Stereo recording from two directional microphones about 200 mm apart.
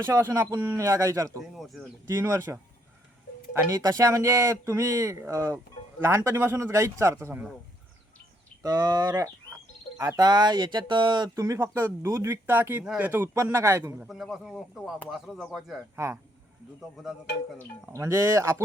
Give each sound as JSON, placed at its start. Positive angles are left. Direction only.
{"t": 0.0, "sound": "speech", "side_deg": -15}
{"t": 1.5, "sound": "speech", "side_deg": 0}
{"t": 2.0, "sound": "speech", "side_deg": -15}
{"t": 8.6, "sound": "speech", "side_deg": -20}
{"t": 17.9, "sound": "speech", "side_deg": -15}